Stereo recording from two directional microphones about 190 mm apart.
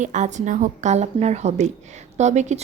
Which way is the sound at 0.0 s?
40° right (ahead or behind).